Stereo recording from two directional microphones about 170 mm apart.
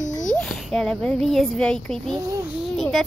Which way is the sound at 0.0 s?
45° left (ahead or behind).